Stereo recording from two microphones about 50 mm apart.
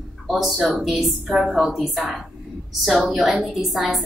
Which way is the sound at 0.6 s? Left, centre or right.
Centre.